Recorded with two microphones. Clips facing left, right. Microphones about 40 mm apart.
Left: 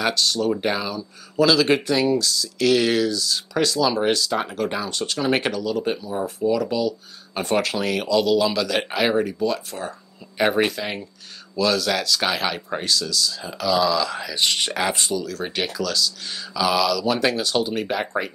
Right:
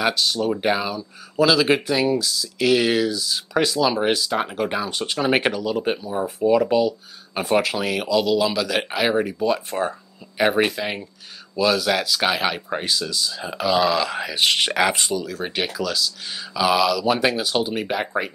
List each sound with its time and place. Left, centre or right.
0.0 s speech: centre; by 7.0 s right
7.3 s speech: centre
9.7 s speech: right
10.3 s speech: centre
15.3 s speech: centre